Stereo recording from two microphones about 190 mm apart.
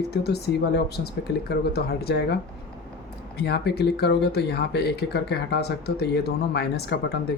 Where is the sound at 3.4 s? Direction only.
60° left (ahead or behind).